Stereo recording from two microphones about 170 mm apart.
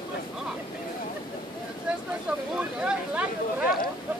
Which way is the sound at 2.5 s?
10° right (ahead or behind).